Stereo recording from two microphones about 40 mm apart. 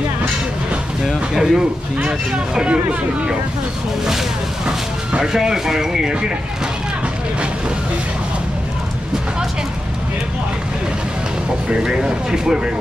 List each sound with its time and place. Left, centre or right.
1.4 s speech: centre
4.6 s speech: centre
11.8 s speech: centre